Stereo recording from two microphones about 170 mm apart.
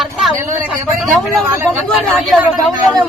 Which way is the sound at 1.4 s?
15° right (ahead or behind).